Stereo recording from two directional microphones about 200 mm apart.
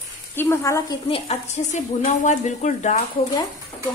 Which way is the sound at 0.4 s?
15° left (ahead or behind).